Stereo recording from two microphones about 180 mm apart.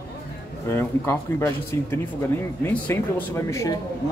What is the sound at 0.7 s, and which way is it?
A man's voice, 15° left (ahead or behind).